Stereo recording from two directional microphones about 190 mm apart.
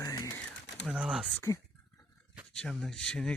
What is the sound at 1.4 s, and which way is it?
Speech, 15° left (ahead or behind).